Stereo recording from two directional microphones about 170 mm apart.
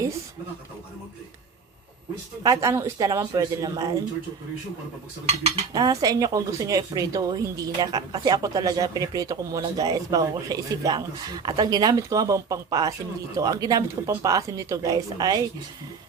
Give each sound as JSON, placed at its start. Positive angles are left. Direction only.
{"t": 2.4, "sound": "speech", "side_deg": -20}
{"t": 5.7, "sound": "speech", "side_deg": -20}